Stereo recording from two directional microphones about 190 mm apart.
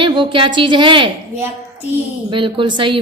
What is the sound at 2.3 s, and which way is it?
Speech, 25° right (ahead or behind).